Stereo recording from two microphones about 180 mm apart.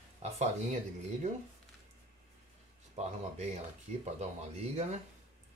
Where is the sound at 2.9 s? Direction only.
40° right (ahead or behind).